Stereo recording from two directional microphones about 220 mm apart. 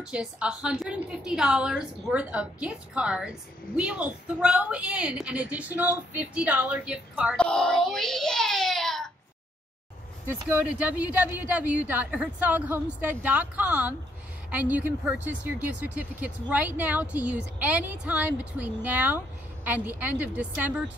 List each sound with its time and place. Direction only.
0.0 s a woman's voice: 5° right (ahead or behind)
10.2 s speech: 5° right (ahead or behind)